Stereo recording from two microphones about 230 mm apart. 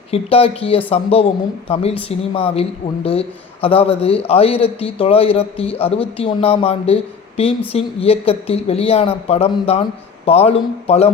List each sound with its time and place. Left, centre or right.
0.1 s speech: left